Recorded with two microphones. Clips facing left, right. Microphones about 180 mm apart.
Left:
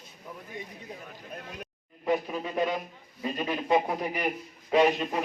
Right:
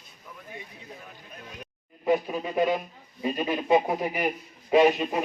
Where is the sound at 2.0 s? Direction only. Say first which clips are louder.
Right 3 dB; 5° right (ahead or behind).